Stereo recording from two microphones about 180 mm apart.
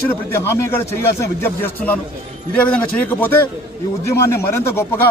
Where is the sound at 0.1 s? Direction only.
15° left (ahead or behind).